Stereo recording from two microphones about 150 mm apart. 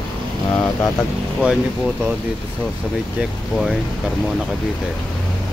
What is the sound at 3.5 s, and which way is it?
Speech, centre (ahead or behind).